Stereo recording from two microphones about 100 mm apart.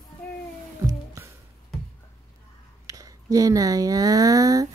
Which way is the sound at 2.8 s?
35° right (ahead or behind).